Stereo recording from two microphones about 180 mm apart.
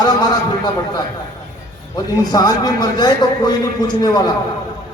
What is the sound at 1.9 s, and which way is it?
A man's voice, 20° left (ahead or behind).